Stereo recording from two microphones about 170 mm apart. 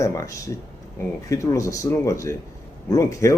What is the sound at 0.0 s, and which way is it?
Speech, 20° left (ahead or behind).